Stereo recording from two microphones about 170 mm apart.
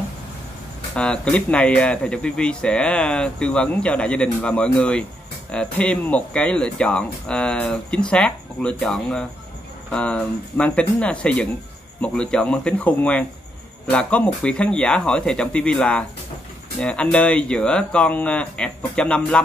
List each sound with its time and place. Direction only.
0.9 s speech: 5° left (ahead or behind)